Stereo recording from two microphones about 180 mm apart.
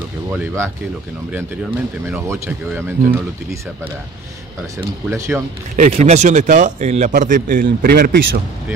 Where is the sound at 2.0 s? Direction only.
15° right (ahead or behind).